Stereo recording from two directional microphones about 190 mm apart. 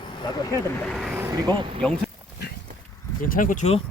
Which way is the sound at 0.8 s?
Centre (ahead or behind).